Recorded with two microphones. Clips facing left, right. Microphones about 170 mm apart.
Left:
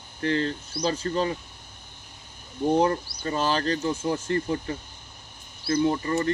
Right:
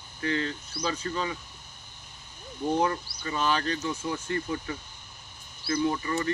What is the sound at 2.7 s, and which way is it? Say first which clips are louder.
Speech: left 4 dB; 40° left (ahead or behind).